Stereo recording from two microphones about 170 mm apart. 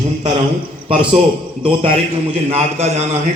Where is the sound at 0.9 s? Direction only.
30° right (ahead or behind).